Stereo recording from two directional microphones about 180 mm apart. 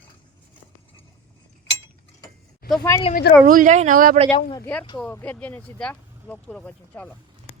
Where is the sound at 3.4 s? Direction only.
50° right (ahead or behind).